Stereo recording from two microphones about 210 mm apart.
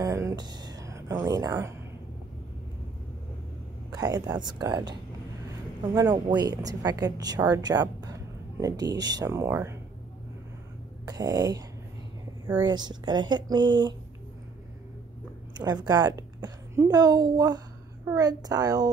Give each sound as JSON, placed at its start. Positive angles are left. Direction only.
{"t": 0.0, "sound": "music", "side_deg": -15}
{"t": 3.9, "sound": "speech", "side_deg": -20}
{"t": 5.9, "sound": "a woman's voice", "side_deg": -20}
{"t": 11.1, "sound": "a woman's voice", "side_deg": -20}
{"t": 12.6, "sound": "speech", "side_deg": -20}
{"t": 15.5, "sound": "a woman's voice", "side_deg": -20}